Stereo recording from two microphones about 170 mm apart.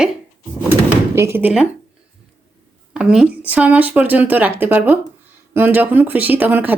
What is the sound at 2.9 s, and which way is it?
Speech, 5° right (ahead or behind).